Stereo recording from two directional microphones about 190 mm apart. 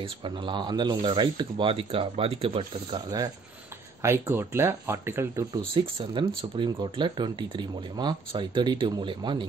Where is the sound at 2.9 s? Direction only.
20° right (ahead or behind).